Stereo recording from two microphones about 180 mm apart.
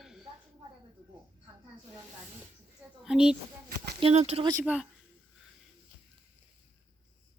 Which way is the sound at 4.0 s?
35° right (ahead or behind).